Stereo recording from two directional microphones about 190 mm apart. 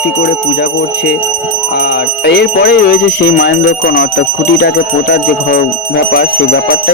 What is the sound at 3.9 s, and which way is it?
Speech, 70° left (ahead or behind).